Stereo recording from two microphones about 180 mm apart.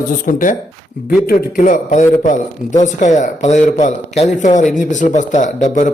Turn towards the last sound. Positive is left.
turn(degrees=45)  # may be behind; listen again after turning